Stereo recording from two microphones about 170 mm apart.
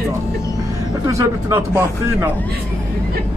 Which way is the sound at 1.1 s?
20° right (ahead or behind).